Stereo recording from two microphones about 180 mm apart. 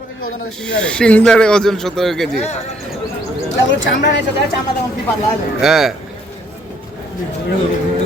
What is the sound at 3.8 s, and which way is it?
Speech, 80° left.